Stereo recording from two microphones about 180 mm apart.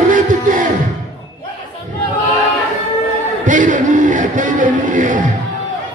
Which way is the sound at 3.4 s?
45° right (ahead or behind).